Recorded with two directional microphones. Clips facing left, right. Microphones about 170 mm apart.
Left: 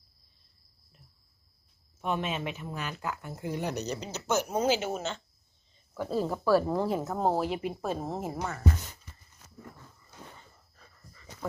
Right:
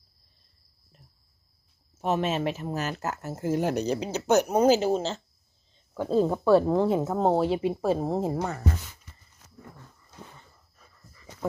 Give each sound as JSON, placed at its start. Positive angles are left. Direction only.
{"t": 2.0, "sound": "speech", "side_deg": -40}
{"t": 4.6, "sound": "speech", "side_deg": -35}
{"t": 5.9, "sound": "speech", "side_deg": -20}